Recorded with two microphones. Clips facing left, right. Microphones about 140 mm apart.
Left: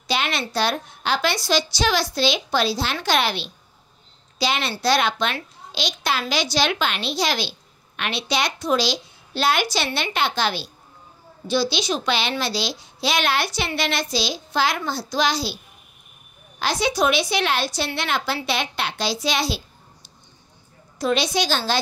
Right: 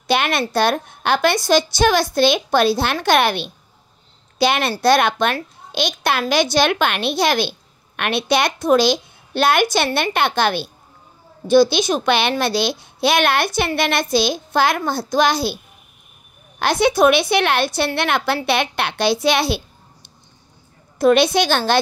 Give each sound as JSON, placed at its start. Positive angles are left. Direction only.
{"t": 0.0, "sound": "a woman's voice", "side_deg": -55}